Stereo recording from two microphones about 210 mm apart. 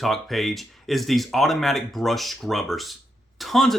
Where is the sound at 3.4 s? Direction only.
Centre (ahead or behind).